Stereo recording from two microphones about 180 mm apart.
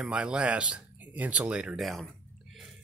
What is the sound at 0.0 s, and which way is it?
Speech, 5° right (ahead or behind).